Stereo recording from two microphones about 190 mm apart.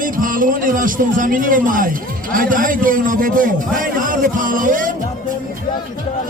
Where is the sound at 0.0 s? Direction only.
45° right (ahead or behind).